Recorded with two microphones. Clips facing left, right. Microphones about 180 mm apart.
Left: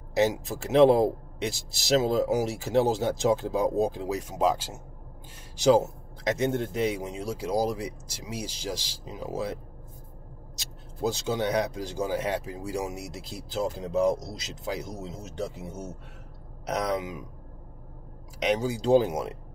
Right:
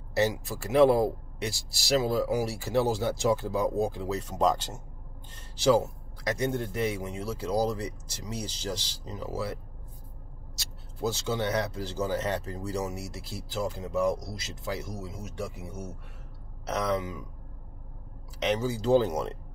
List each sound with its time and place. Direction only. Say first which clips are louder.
0.1 s speech: left 2 dB; 20° left (ahead or behind)
5.6 s a man's voice: left 2 dB; 20° left (ahead or behind)
18.4 s a man's voice: left 2 dB; 15° left (ahead or behind)